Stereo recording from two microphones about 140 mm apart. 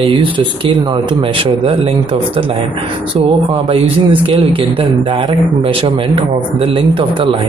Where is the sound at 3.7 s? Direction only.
40° right (ahead or behind).